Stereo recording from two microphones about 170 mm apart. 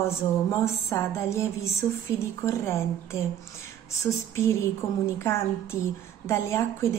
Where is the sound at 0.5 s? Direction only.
15° left (ahead or behind).